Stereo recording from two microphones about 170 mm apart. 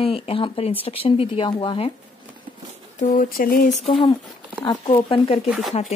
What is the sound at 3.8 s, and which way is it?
Speech, 30° left (ahead or behind).